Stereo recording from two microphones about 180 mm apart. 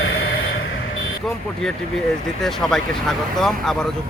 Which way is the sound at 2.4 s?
Centre (ahead or behind).